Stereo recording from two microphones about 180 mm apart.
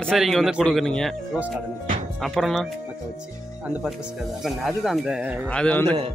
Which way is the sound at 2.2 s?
Centre (ahead or behind).